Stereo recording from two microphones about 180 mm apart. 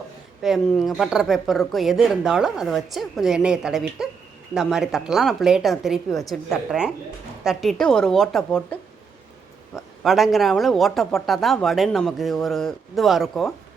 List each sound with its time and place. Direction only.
0.4 s speech: centre (ahead or behind)
9.7 s a sound: centre (ahead or behind)
10.3 s speech: centre (ahead or behind)